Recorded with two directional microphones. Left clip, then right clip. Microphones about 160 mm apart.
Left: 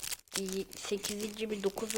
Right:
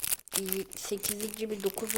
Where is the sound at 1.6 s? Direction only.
15° right (ahead or behind).